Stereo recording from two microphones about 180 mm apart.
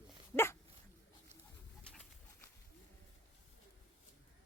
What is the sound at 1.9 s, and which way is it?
Bird, 5° left (ahead or behind).